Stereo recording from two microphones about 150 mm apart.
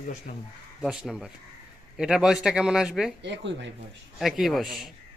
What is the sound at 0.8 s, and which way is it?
Speech, 5° right (ahead or behind).